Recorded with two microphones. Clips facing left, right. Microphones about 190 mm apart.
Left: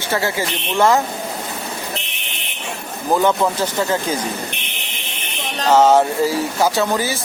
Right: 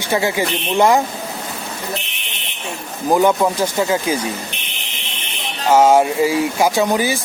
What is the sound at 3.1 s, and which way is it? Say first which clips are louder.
Speech: right 2 dB; 10° right (ahead or behind).